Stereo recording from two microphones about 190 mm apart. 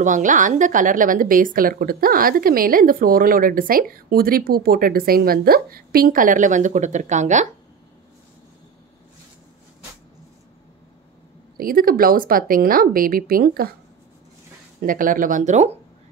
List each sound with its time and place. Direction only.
0.0 s a woman's voice: 40° right (ahead or behind)
11.5 s a woman's voice: 50° right (ahead or behind)
14.8 s a woman's voice: 45° right (ahead or behind)